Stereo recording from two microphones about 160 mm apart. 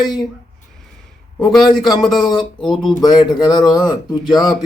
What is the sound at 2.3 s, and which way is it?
Speech, centre (ahead or behind).